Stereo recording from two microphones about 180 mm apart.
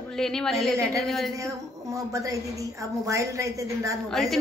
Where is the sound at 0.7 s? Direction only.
15° right (ahead or behind).